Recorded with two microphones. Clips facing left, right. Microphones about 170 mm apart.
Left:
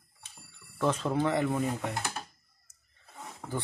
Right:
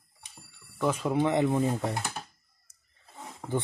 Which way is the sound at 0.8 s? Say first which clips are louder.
Right 2 dB; 10° right (ahead or behind).